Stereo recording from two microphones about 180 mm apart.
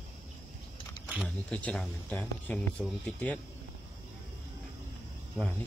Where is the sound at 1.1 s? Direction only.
Centre (ahead or behind).